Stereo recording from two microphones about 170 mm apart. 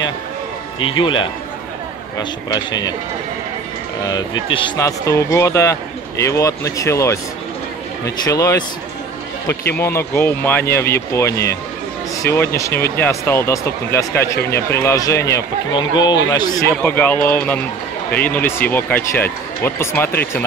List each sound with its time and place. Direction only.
0.8 s speech: 30° left (ahead or behind)
4.1 s speech: 25° left (ahead or behind)
9.8 s speech: 15° left (ahead or behind)
16.8 s speech: 10° left (ahead or behind)